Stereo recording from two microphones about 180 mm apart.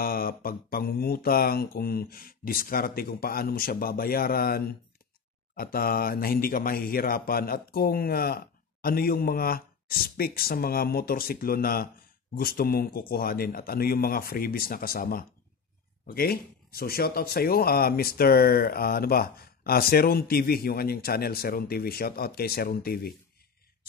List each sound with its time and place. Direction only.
0.0 s speech: 55° left (ahead or behind)